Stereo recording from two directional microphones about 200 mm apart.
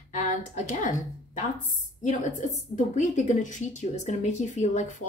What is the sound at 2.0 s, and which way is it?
A woman's voice, 35° left (ahead or behind).